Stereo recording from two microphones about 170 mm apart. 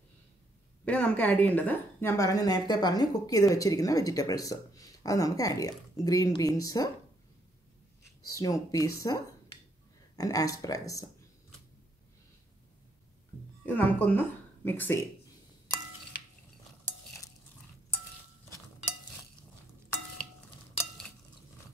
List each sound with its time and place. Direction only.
0.8 s a woman's voice: 10° left (ahead or behind)
8.3 s a woman's voice: 20° left (ahead or behind)
13.7 s speech: 10° left (ahead or behind)